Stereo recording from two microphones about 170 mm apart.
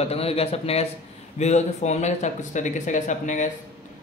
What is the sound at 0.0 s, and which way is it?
Speech, 35° left (ahead or behind).